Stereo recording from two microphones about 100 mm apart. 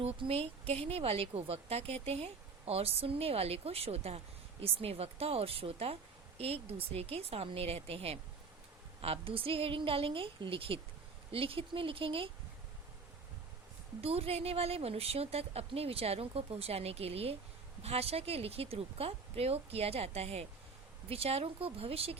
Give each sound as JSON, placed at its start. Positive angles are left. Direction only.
{"t": 0.0, "sound": "speech", "side_deg": -75}
{"t": 4.6, "sound": "speech", "side_deg": -75}
{"t": 6.7, "sound": "a woman's voice", "side_deg": -75}
{"t": 14.0, "sound": "a woman's voice", "side_deg": -80}